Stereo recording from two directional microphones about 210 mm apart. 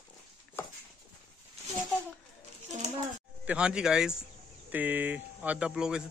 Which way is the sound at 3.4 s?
5° right (ahead or behind).